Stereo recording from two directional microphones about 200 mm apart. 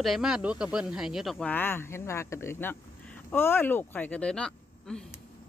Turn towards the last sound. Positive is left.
turn(degrees=5)  # may be behind; listen again after turning